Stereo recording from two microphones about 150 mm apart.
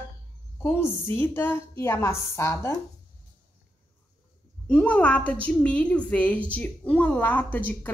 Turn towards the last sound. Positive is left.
turn(degrees=10)  # may be behind; listen again after turning